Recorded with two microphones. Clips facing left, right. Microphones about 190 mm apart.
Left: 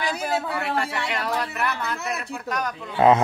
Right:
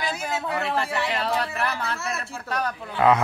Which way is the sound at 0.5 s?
25° right (ahead or behind).